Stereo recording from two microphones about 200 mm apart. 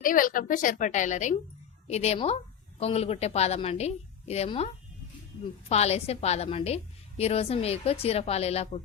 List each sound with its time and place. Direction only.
0.0 s a woman's voice: 45° left (ahead or behind)